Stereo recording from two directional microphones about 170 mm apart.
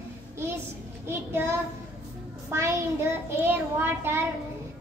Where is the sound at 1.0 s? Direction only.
15° right (ahead or behind).